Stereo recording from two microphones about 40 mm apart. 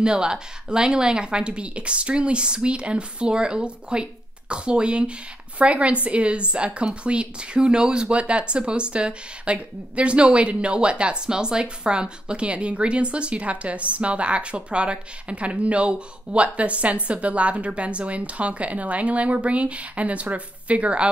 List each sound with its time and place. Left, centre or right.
0.0 s a woman's voice: centre